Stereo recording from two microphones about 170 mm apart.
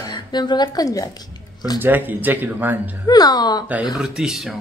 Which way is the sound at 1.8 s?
10° right (ahead or behind).